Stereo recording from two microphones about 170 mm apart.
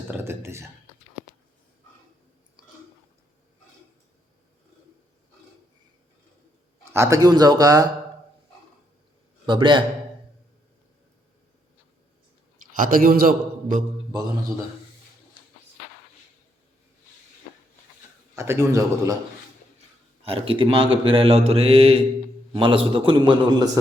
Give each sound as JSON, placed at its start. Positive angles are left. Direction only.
{"t": 0.1, "sound": "a sound", "side_deg": -15}
{"t": 6.9, "sound": "a man's voice", "side_deg": -15}
{"t": 9.5, "sound": "a man's voice", "side_deg": -30}
{"t": 12.7, "sound": "a man's voice", "side_deg": -55}
{"t": 18.3, "sound": "a man's voice", "side_deg": -15}
{"t": 20.2, "sound": "a man's voice", "side_deg": -30}